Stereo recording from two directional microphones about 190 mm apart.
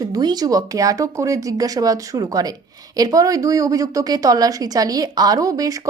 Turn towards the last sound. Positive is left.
turn(degrees=-20)  # may be behind; listen again after turning